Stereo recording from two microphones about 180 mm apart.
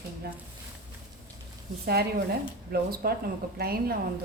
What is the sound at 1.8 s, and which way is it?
A woman's voice, 60° right (ahead or behind).